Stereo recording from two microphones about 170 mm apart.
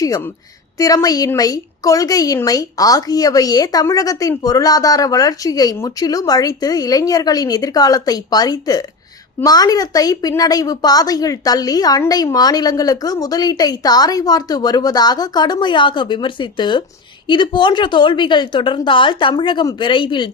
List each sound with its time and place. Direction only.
0.8 s a woman's voice: 20° left (ahead or behind)